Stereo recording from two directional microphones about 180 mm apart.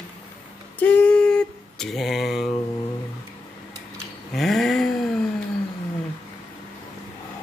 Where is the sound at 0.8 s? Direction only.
10° left (ahead or behind).